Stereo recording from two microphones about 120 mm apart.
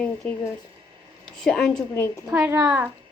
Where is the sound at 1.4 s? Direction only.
5° left (ahead or behind).